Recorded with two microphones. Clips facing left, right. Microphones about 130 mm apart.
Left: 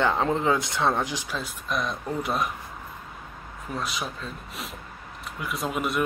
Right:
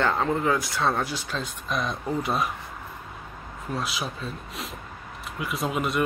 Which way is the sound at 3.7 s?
Centre (ahead or behind).